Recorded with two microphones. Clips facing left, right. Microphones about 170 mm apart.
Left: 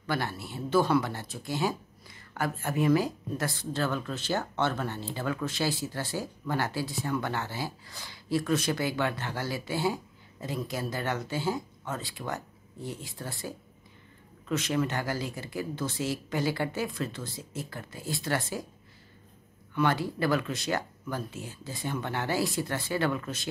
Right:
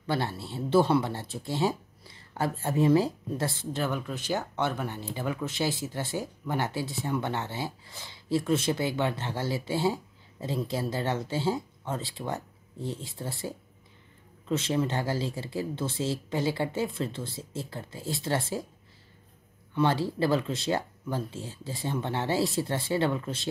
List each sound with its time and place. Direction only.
0.0 s speech: 25° right (ahead or behind)
19.7 s speech: 25° right (ahead or behind)